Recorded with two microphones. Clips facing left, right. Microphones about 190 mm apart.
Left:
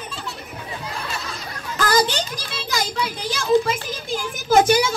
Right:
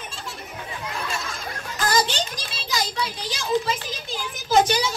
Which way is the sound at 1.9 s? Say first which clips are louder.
Left 3 dB; 55° left (ahead or behind).